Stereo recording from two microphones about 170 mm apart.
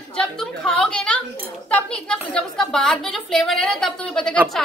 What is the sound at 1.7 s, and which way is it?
A woman's voice, 5° left (ahead or behind).